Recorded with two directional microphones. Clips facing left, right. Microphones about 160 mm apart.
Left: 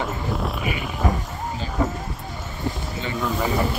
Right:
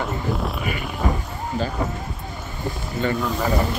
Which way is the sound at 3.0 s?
45° right (ahead or behind).